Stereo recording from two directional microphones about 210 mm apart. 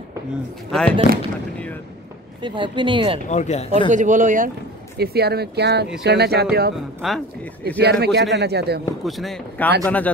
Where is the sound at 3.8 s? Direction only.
35° right (ahead or behind).